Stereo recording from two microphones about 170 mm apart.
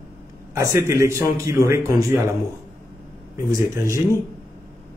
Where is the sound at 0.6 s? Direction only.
15° right (ahead or behind).